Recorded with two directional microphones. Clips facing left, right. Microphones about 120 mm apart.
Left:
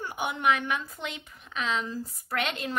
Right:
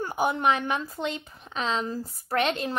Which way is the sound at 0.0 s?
40° right (ahead or behind).